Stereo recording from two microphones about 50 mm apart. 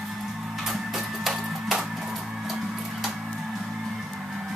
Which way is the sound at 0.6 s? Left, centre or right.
Centre.